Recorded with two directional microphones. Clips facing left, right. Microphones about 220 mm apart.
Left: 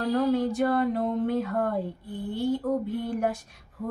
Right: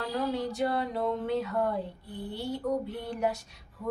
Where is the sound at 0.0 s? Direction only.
50° left (ahead or behind).